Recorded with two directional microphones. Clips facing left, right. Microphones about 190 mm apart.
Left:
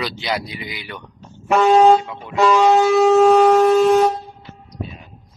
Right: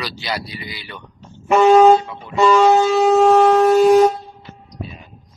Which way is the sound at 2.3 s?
Centre (ahead or behind).